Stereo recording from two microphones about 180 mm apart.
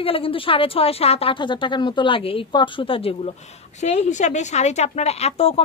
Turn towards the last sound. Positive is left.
turn(degrees=35)  # may be behind; listen again after turning